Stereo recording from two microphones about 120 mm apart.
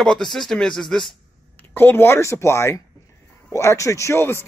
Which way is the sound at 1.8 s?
20° left (ahead or behind).